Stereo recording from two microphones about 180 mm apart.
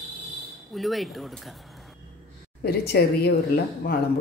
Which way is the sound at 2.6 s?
60° left (ahead or behind).